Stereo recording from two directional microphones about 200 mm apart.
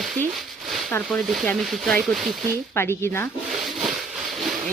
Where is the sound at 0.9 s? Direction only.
10° left (ahead or behind).